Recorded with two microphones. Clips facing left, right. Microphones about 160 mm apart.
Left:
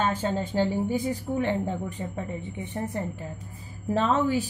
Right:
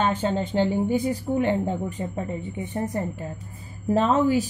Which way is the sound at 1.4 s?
35° right (ahead or behind).